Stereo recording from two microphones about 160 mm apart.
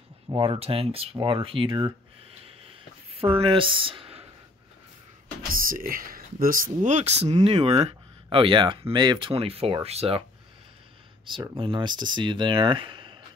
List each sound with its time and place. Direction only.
0.3 s speech: 35° right (ahead or behind)
3.1 s speech: 35° right (ahead or behind)
5.5 s speech: 60° right (ahead or behind); by 10.2 s 40° right (ahead or behind)
11.5 s speech: 30° right (ahead or behind)